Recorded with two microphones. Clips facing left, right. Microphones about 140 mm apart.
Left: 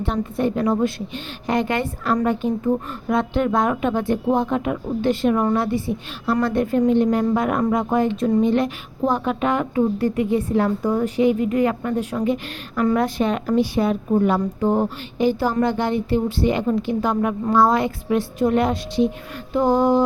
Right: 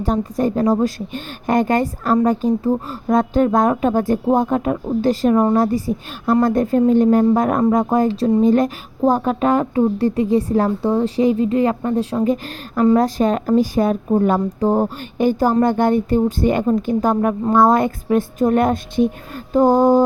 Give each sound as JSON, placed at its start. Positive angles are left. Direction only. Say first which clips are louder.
{"t": 0.0, "sound": "speech", "louder": "right 3 dB", "side_deg": -40}